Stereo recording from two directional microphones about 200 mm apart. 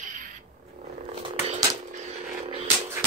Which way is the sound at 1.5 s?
35° right (ahead or behind).